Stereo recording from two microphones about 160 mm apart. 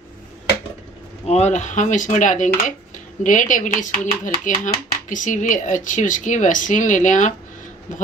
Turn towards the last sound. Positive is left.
turn(degrees=50)  # may be behind; listen again after turning